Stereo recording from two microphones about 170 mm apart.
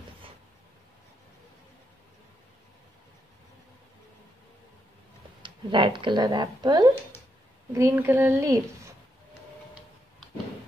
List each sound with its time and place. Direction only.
5.4 s a woman's voice: 30° right (ahead or behind)